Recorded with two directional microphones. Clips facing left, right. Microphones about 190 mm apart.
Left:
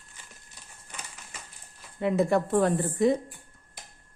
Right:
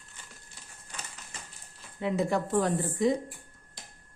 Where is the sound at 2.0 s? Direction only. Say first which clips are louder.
Left 4 dB; 55° left (ahead or behind).